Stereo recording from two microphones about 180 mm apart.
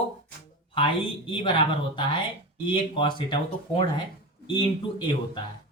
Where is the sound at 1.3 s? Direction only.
30° left (ahead or behind).